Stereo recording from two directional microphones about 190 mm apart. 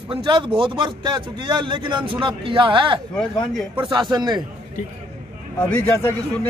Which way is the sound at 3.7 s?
25° right (ahead or behind).